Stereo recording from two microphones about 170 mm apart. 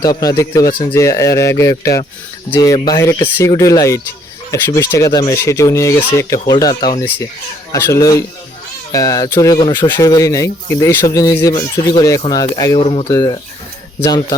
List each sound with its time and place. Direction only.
0.0 s speech: 20° left (ahead or behind)
12.8 s speech: 35° left (ahead or behind)
13.1 s speech: 25° left (ahead or behind)